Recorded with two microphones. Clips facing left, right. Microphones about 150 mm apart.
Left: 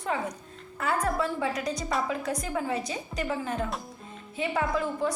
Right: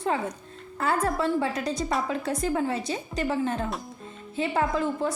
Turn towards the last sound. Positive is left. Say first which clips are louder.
# right 2 dB
turn(degrees=-30)  # may be behind; listen again after turning